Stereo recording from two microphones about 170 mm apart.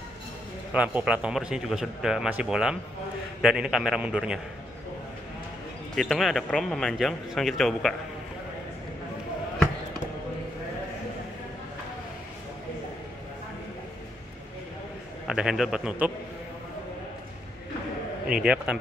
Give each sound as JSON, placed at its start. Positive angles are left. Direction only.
{"t": 0.7, "sound": "a man's voice", "side_deg": -10}
{"t": 5.9, "sound": "a man's voice", "side_deg": 0}
{"t": 15.2, "sound": "a man's voice", "side_deg": -5}
{"t": 18.3, "sound": "a man's voice", "side_deg": -5}